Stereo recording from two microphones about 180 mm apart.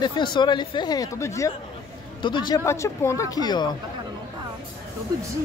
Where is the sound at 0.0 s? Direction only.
25° left (ahead or behind).